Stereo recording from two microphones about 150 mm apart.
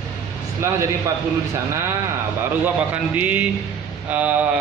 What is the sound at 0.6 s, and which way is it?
A man's voice, 20° right (ahead or behind).